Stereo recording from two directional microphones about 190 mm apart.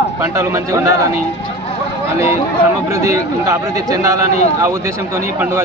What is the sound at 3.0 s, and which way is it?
Speech, 15° right (ahead or behind).